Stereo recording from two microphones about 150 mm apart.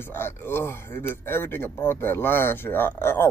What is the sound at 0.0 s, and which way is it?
Speech, 15° left (ahead or behind).